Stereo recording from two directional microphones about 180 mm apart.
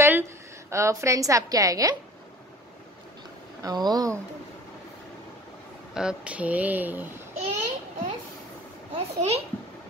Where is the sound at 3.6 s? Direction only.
20° right (ahead or behind).